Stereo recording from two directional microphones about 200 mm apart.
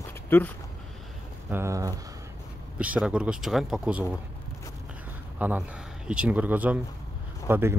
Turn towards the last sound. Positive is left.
turn(degrees=-10)  # may be behind; listen again after turning